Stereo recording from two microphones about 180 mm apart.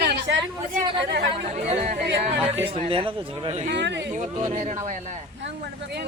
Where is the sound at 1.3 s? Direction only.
40° right (ahead or behind).